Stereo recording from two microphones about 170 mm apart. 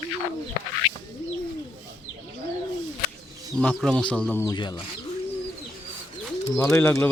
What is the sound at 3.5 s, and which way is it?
Speech, 5° left (ahead or behind).